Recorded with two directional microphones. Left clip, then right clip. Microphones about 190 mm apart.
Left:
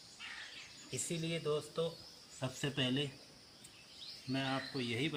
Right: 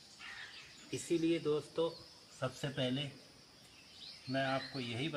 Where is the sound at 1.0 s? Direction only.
15° right (ahead or behind).